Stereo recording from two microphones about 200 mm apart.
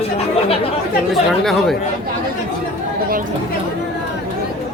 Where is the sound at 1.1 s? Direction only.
Centre (ahead or behind).